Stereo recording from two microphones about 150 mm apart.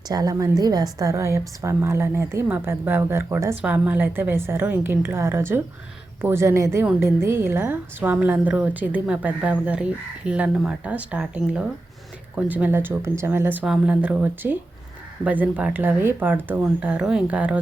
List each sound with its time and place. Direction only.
0.1 s a woman's voice: 25° right (ahead or behind)